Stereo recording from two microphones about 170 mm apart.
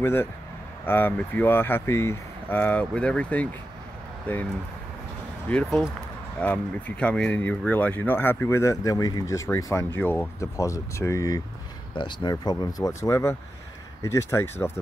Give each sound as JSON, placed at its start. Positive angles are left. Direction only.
{"t": 0.0, "sound": "speech", "side_deg": 15}
{"t": 5.5, "sound": "speech", "side_deg": 5}